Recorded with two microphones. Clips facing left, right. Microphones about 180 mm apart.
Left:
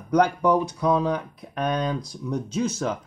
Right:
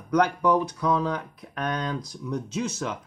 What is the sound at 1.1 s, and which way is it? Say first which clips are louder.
Speech: left 4 dB; 15° left (ahead or behind).